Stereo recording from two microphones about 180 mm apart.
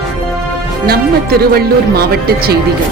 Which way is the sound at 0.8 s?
60° right (ahead or behind).